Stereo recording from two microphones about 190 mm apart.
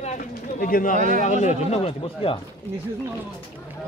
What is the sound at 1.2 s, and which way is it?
Speech, 40° left (ahead or behind).